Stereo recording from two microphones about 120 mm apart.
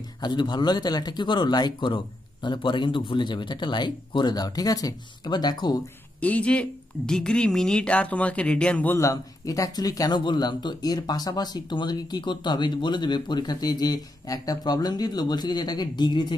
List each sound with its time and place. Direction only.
0.2 s speech: 40° left (ahead or behind)
6.2 s speech: 10° left (ahead or behind)
9.0 s speech: 30° left (ahead or behind)